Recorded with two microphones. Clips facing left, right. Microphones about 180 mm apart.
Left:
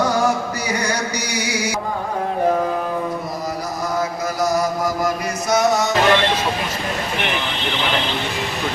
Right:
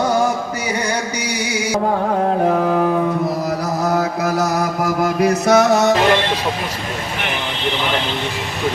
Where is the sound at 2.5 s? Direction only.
75° right (ahead or behind).